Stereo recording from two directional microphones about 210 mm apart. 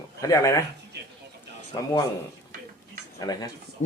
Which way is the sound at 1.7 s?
20° left (ahead or behind).